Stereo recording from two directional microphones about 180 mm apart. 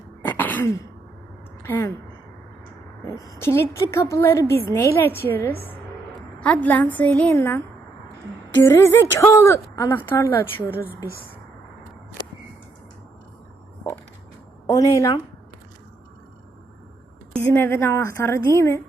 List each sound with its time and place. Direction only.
0.2 s throat clearing: 10° left (ahead or behind)
1.6 s a woman's voice: 10° left (ahead or behind)
3.2 s a woman's voice: 15° left (ahead or behind)
8.6 s a woman's voice: 15° left (ahead or behind)
14.7 s a woman's voice: 20° left (ahead or behind)
17.5 s a woman's voice: 15° left (ahead or behind)